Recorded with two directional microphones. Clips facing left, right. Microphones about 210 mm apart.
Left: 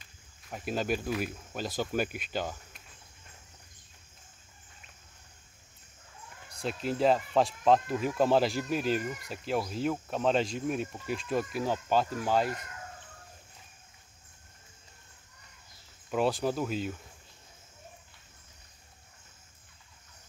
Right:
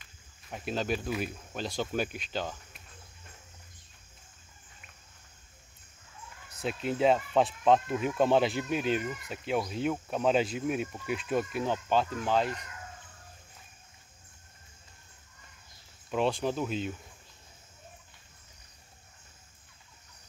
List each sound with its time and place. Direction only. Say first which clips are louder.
0.5 s speech: left 1 dB; 5° left (ahead or behind)
6.5 s speech: even; 5° right (ahead or behind)
16.1 s speech: left 1 dB; 5° left (ahead or behind)